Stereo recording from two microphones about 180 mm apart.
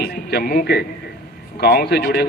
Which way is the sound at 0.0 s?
65° left (ahead or behind).